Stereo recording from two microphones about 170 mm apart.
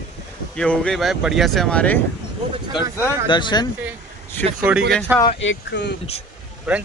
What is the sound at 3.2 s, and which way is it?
Speech, 25° left (ahead or behind).